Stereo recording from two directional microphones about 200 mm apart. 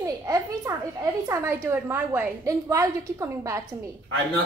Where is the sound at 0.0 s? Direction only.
15° right (ahead or behind).